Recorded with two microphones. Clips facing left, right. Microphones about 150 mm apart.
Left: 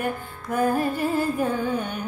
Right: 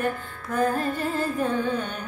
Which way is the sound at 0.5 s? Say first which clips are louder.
Left 2 dB; 10° left (ahead or behind).